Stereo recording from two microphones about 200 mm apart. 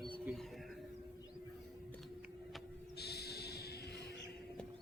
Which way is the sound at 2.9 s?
55° left (ahead or behind).